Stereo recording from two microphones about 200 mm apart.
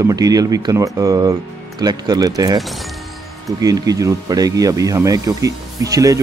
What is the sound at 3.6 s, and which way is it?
Speech, 20° right (ahead or behind).